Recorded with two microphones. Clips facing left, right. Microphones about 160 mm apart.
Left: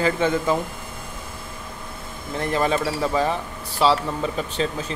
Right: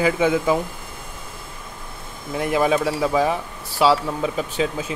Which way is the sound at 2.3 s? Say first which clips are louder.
Right 3 dB; 10° right (ahead or behind).